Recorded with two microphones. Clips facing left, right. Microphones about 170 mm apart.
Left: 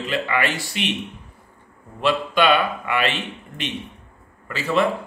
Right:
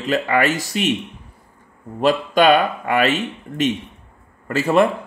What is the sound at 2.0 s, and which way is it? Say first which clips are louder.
Speech: right 4 dB; 45° right (ahead or behind).